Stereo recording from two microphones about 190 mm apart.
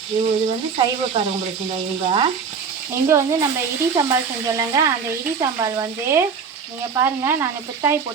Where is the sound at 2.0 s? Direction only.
25° right (ahead or behind).